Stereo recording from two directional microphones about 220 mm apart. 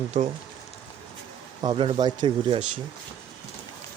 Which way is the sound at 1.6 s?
20° right (ahead or behind).